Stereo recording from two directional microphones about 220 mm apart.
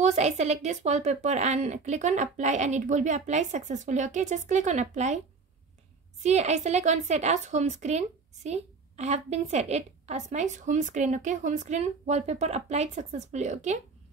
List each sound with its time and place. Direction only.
0.0 s a woman's voice: 30° right (ahead or behind)
6.2 s a woman's voice: 30° right (ahead or behind)